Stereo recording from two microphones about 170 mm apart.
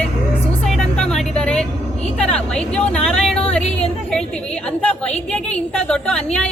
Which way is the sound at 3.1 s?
5° left (ahead or behind).